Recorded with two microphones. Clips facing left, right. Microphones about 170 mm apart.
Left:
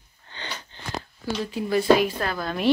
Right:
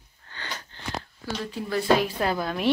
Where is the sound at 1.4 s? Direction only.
15° left (ahead or behind).